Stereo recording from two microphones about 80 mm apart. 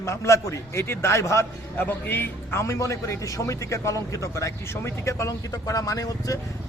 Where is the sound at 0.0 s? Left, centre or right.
Left.